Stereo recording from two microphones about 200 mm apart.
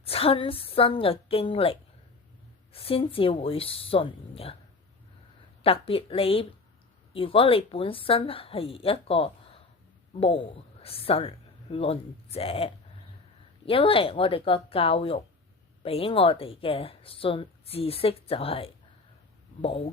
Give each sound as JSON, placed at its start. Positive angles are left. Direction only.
{"t": 0.0, "sound": "a woman's voice", "side_deg": 30}
{"t": 5.6, "sound": "a woman's voice", "side_deg": 30}